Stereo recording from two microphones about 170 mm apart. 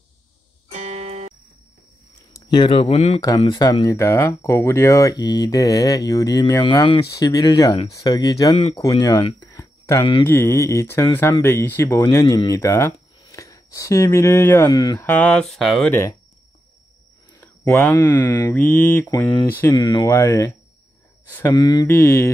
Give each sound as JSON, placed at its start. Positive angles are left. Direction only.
{"t": 0.7, "sound": "music", "side_deg": -40}
{"t": 2.3, "sound": "speech", "side_deg": 25}
{"t": 3.2, "sound": "speech", "side_deg": 25}
{"t": 15.0, "sound": "speech", "side_deg": 10}
{"t": 15.9, "sound": "speech", "side_deg": 15}
{"t": 17.4, "sound": "speech", "side_deg": 10}
{"t": 19.6, "sound": "speech", "side_deg": 25}
{"t": 21.5, "sound": "speech", "side_deg": 25}